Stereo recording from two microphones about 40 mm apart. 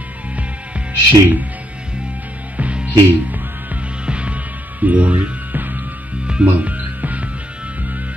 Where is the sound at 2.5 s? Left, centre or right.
Right.